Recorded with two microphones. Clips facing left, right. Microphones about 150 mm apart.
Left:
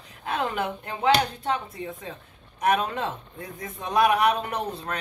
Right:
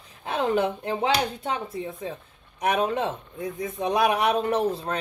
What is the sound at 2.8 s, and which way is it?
Speech, 20° right (ahead or behind).